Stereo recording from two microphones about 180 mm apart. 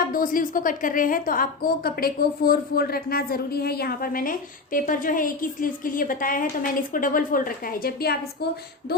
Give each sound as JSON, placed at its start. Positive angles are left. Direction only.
{"t": 0.1, "sound": "a woman's voice", "side_deg": 50}